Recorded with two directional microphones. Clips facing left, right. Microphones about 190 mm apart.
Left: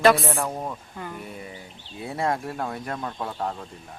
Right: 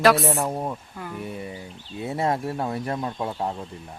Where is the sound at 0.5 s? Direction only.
15° right (ahead or behind).